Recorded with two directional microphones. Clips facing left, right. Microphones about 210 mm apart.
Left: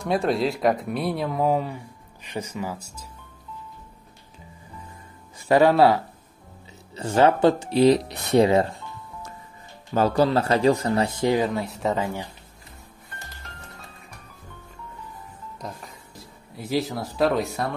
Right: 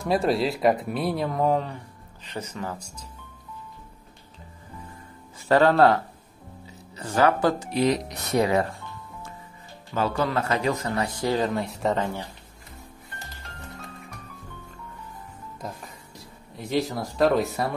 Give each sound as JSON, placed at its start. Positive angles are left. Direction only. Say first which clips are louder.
{"t": 0.0, "sound": "speech", "louder": "even", "side_deg": 0}
{"t": 5.5, "sound": "speech", "louder": "left 1 dB", "side_deg": 10}
{"t": 7.0, "sound": "speech", "louder": "left 3 dB", "side_deg": 25}
{"t": 9.9, "sound": "a man's voice", "louder": "left 5 dB", "side_deg": 35}
{"t": 11.5, "sound": "speech", "louder": "even", "side_deg": 0}
{"t": 15.6, "sound": "speech", "louder": "even", "side_deg": 0}